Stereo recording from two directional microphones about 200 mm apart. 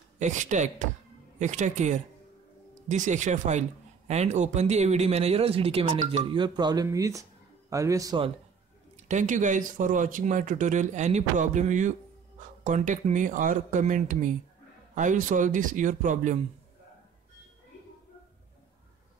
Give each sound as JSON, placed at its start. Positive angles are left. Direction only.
{"t": 0.2, "sound": "speech", "side_deg": -35}
{"t": 9.0, "sound": "speech", "side_deg": -40}